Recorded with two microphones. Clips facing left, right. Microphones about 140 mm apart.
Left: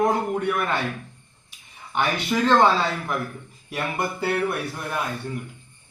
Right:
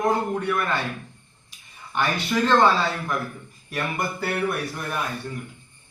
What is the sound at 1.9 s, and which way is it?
A man's voice, 15° left (ahead or behind).